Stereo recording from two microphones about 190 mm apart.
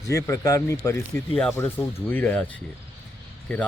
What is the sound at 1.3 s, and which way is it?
Speech, centre (ahead or behind).